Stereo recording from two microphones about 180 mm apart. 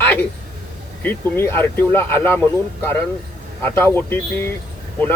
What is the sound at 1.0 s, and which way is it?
Speech, 15° left (ahead or behind).